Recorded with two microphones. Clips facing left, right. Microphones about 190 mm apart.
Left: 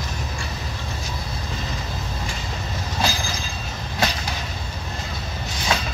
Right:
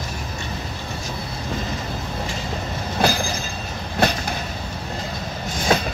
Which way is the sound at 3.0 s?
60° right (ahead or behind).